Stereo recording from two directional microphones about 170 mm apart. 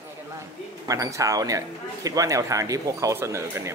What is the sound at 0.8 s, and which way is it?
Speech, 20° right (ahead or behind).